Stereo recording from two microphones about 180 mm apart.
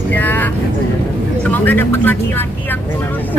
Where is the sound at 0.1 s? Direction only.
10° left (ahead or behind).